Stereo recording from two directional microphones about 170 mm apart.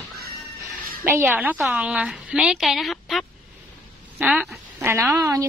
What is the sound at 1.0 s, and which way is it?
A woman's voice, 15° right (ahead or behind).